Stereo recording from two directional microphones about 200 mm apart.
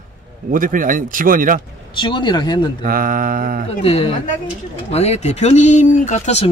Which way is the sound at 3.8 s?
30° left (ahead or behind).